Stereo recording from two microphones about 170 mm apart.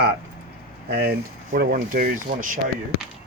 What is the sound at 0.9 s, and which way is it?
Speech, 75° right (ahead or behind).